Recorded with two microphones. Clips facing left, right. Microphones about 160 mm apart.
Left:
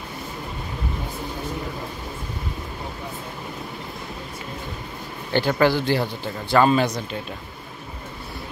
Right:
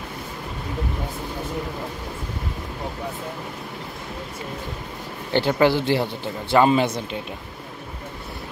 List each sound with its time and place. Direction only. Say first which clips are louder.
5.3 s a man's voice: right 1 dB; 20° right (ahead or behind)